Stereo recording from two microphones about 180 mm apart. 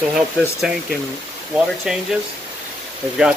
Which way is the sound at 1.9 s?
5° right (ahead or behind).